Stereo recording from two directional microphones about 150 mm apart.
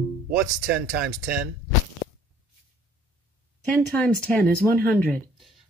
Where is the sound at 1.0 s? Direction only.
90° right.